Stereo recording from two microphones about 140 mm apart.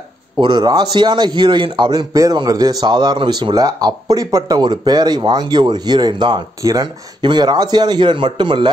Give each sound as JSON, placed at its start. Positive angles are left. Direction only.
{"t": 0.4, "sound": "a man's voice", "side_deg": -30}